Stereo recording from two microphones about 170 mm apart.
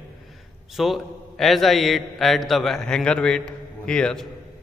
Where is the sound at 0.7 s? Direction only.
Centre (ahead or behind).